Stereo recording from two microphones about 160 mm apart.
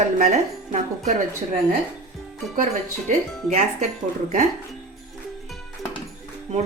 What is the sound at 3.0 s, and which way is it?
Speech, 50° right (ahead or behind).